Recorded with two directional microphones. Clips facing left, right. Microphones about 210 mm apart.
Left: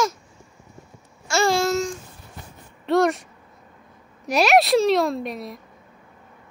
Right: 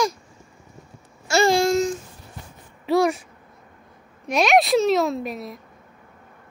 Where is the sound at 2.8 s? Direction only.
Centre (ahead or behind).